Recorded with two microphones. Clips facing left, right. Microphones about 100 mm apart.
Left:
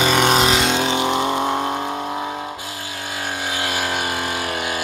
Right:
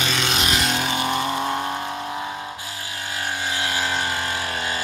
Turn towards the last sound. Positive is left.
turn(degrees=15)  # may be behind; listen again after turning